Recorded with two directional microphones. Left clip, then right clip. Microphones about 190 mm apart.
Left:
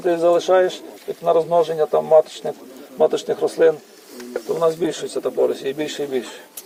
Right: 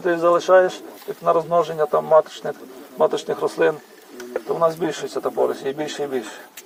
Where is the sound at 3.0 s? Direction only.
15° left (ahead or behind); by 6.1 s centre (ahead or behind).